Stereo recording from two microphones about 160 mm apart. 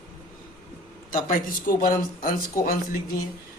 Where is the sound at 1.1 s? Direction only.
60° left (ahead or behind).